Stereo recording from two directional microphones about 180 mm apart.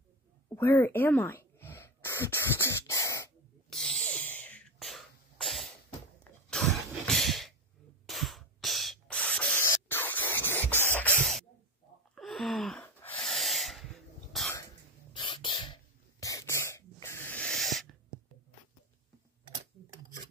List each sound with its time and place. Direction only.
0.6 s a sound: 10° left (ahead or behind)
3.7 s sneeze: 5° left (ahead or behind)
6.5 s cough: centre (ahead or behind)
8.1 s spray: centre (ahead or behind)
12.2 s gasp: centre (ahead or behind)
15.1 s a sound: 25° left (ahead or behind); by 17.8 s centre (ahead or behind)